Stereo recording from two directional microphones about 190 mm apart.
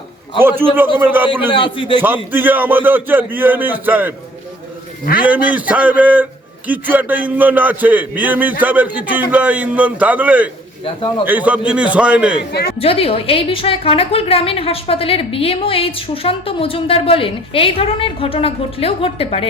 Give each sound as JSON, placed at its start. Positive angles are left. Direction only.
{"t": 0.3, "sound": "a man's voice", "side_deg": -10}
{"t": 1.3, "sound": "a woman's voice", "side_deg": 25}
{"t": 2.0, "sound": "a man's voice", "side_deg": -10}
{"t": 5.2, "sound": "a man's voice", "side_deg": -10}
{"t": 10.8, "sound": "a woman's voice", "side_deg": 25}
{"t": 11.3, "sound": "a man's voice", "side_deg": -10}
{"t": 12.5, "sound": "a woman's voice", "side_deg": 60}
{"t": 12.8, "sound": "a woman's voice", "side_deg": 30}